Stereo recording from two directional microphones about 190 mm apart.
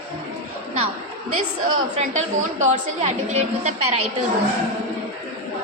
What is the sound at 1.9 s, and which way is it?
A woman's voice, 35° right (ahead or behind).